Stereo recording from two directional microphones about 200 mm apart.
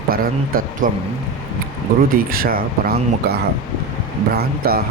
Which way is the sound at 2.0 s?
45° right (ahead or behind).